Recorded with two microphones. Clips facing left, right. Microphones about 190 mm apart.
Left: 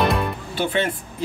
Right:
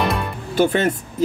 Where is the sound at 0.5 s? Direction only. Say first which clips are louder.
Right 6 dB; 45° right (ahead or behind).